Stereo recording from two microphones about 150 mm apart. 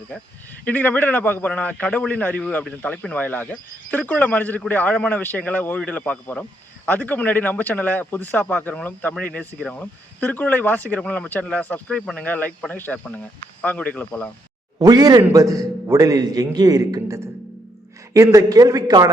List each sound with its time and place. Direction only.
0.6 s speech: 10° left (ahead or behind)
14.8 s a man's voice: 25° right (ahead or behind)